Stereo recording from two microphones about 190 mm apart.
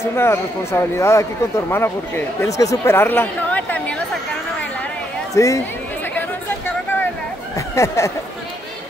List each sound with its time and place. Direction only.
0.1 s speech: 15° left (ahead or behind)
5.3 s speech: 15° left (ahead or behind)
7.7 s speech: 15° left (ahead or behind)